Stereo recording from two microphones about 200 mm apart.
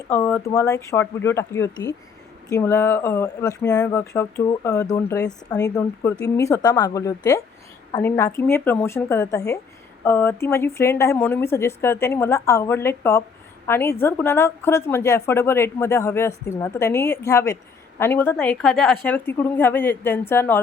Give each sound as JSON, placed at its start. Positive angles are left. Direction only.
{"t": 0.1, "sound": "speech", "side_deg": 15}